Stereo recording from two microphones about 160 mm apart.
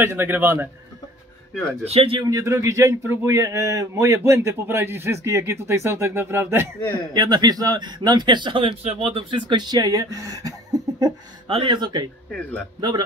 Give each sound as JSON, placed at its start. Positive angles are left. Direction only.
{"t": 0.0, "sound": "speech", "side_deg": -15}
{"t": 1.9, "sound": "a man's voice", "side_deg": -35}
{"t": 2.2, "sound": "speech", "side_deg": -20}
{"t": 7.2, "sound": "speech", "side_deg": -25}
{"t": 11.4, "sound": "speech", "side_deg": -35}
{"t": 12.3, "sound": "a man's voice", "side_deg": 5}